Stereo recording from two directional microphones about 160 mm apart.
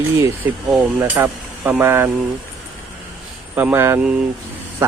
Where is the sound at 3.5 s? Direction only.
10° right (ahead or behind).